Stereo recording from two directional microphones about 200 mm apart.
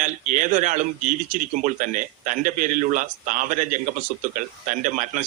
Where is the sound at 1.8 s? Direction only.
40° right (ahead or behind).